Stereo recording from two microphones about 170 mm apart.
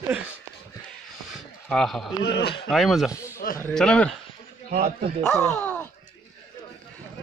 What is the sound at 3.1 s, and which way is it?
Speech, 20° left (ahead or behind).